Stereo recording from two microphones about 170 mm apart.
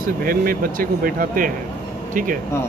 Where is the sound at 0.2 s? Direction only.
60° right (ahead or behind).